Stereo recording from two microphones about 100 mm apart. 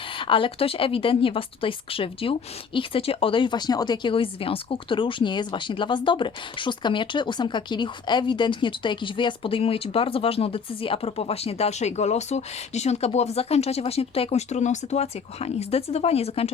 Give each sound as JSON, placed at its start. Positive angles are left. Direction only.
{"t": 0.1, "sound": "speech", "side_deg": 60}